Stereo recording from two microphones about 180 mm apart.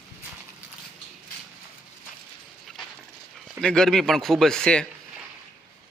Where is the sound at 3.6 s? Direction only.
5° left (ahead or behind).